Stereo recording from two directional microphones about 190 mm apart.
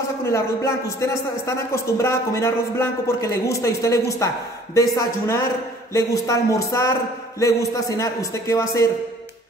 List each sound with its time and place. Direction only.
0.3 s a man's voice: 15° left (ahead or behind)